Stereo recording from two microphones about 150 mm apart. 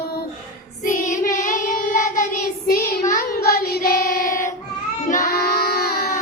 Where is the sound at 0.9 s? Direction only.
65° left (ahead or behind).